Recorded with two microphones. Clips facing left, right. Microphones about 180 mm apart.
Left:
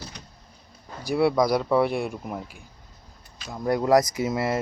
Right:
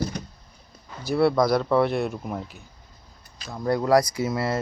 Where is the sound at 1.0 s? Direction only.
15° left (ahead or behind).